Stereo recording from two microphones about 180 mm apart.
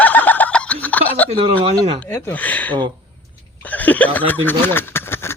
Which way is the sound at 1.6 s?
30° right (ahead or behind).